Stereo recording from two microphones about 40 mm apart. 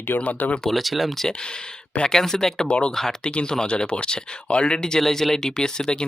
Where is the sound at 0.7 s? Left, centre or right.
Centre.